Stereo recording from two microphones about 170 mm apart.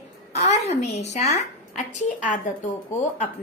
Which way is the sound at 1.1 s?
40° left (ahead or behind).